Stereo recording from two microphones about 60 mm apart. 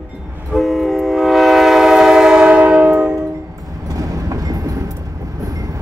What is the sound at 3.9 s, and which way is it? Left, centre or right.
Train, right.